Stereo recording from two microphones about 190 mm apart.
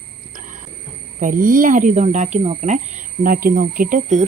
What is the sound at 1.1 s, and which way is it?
Speech, 45° right (ahead or behind).